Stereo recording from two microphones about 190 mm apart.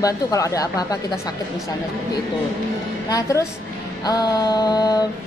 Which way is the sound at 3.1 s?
15° left (ahead or behind).